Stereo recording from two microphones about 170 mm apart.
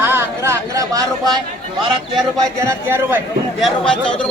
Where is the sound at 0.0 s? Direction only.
15° right (ahead or behind).